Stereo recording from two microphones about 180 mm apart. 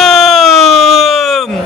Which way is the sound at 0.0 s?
Centre (ahead or behind).